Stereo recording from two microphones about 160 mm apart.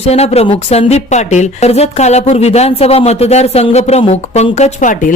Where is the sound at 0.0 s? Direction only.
40° left (ahead or behind).